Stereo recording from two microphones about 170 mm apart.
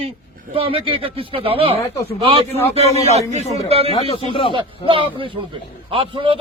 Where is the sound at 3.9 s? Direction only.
35° left (ahead or behind).